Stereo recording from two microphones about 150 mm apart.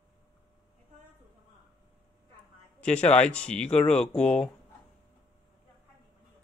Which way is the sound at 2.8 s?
5° left (ahead or behind).